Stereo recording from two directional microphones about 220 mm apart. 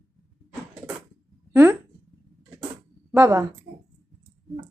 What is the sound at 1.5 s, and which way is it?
Speech, 10° right (ahead or behind).